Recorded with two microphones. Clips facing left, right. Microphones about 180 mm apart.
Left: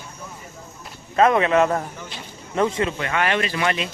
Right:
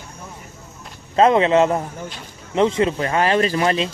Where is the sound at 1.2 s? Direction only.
25° right (ahead or behind).